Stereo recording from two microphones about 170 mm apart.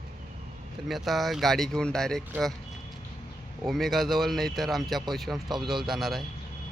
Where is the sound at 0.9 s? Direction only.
Centre (ahead or behind).